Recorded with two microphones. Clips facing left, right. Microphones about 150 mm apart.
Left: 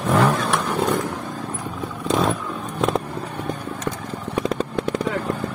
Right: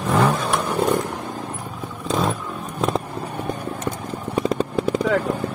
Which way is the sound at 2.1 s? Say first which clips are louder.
Left 2 dB; centre (ahead or behind).